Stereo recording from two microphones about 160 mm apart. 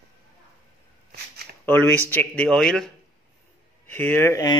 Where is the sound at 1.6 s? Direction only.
10° left (ahead or behind).